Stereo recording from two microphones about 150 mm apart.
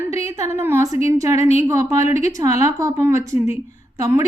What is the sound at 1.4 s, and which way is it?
Speech, 45° left (ahead or behind).